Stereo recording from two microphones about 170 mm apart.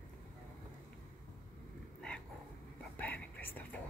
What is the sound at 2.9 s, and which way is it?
Whispering, 10° left (ahead or behind).